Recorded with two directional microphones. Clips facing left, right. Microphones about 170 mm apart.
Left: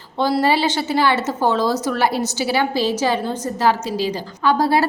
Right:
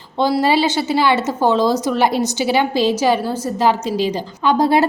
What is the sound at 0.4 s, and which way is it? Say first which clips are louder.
A woman's voice: right 2 dB; 15° right (ahead or behind).